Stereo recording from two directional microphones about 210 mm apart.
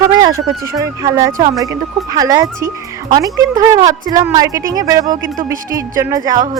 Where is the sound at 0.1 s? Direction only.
20° right (ahead or behind).